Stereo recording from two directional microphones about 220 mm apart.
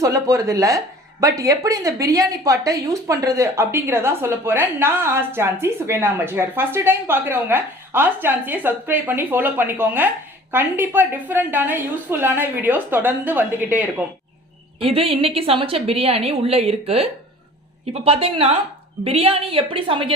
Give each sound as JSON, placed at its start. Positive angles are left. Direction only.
{"t": 0.0, "sound": "speech", "side_deg": -15}
{"t": 14.8, "sound": "a woman's voice", "side_deg": -25}